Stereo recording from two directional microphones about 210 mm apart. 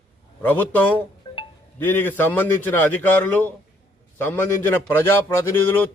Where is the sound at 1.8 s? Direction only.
10° left (ahead or behind).